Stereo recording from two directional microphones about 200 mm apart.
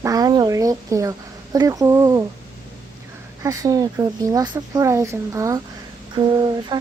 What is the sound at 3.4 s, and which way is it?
A woman's voice, 15° right (ahead or behind).